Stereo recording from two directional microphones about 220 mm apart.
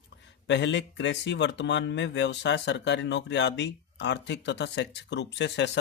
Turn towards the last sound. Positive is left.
turn(degrees=55)  # may be behind; listen again after turning